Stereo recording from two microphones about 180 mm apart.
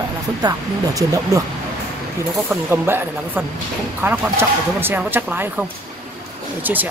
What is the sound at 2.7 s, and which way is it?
Speech, 10° right (ahead or behind).